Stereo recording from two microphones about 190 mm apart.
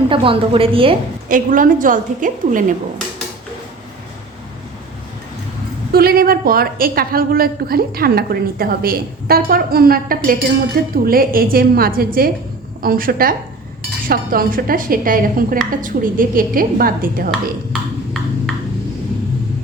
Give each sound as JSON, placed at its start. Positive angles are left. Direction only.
{"t": 0.1, "sound": "a woman's voice", "side_deg": -30}
{"t": 1.3, "sound": "a woman's voice", "side_deg": -45}
{"t": 5.9, "sound": "a woman's voice", "side_deg": -50}
{"t": 17.7, "sound": "a sound", "side_deg": 5}